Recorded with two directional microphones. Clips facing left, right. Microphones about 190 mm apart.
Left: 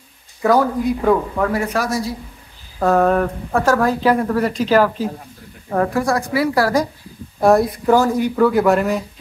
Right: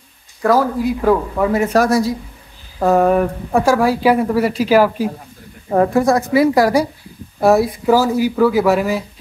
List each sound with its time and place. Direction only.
0.4 s speech: centre (ahead or behind)
1.7 s speech: 40° right (ahead or behind)
2.8 s speech: 10° right (ahead or behind)
5.7 s a woman's voice: 25° right (ahead or behind)
7.3 s speech: 5° right (ahead or behind)